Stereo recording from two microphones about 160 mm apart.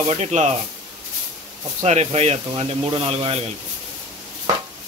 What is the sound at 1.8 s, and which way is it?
Speech, 45° right (ahead or behind).